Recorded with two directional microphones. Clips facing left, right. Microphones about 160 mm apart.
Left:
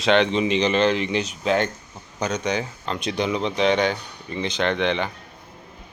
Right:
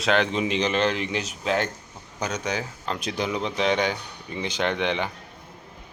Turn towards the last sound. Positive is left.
turn(degrees=-10)  # may be behind; listen again after turning